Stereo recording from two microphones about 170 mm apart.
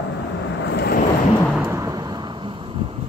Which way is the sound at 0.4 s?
90° left.